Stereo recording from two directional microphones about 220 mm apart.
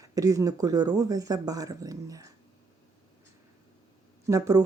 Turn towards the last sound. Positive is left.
turn(degrees=-15)  # may be behind; listen again after turning